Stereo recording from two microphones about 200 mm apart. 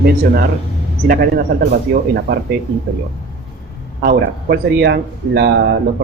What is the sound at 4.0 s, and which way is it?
Speech, 55° right (ahead or behind).